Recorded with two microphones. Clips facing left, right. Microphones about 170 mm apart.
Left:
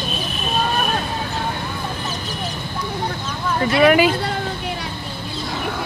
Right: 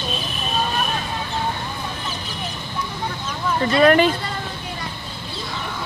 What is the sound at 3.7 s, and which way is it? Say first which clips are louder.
Speech: left 1 dB; 5° left (ahead or behind).